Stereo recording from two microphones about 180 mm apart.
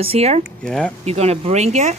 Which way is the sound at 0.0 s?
35° right (ahead or behind).